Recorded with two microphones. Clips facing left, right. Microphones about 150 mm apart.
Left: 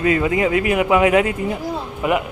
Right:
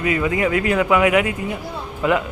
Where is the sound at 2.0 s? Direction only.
15° left (ahead or behind).